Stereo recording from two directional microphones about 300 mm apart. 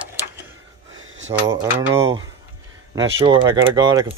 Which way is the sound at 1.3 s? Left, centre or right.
Centre.